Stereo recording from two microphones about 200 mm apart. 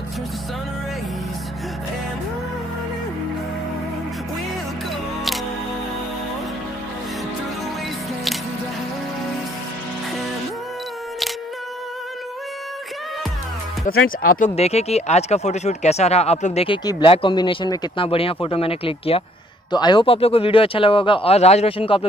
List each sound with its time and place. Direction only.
13.8 s speech: 45° left (ahead or behind)
14.5 s speech: 30° left (ahead or behind)